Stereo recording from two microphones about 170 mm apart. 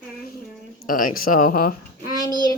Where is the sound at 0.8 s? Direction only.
55° left (ahead or behind).